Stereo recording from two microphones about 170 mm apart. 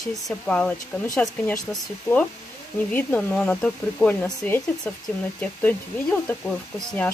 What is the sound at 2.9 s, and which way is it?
Speech, 10° left (ahead or behind).